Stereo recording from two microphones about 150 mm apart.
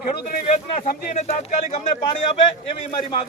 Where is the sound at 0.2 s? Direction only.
75° left (ahead or behind).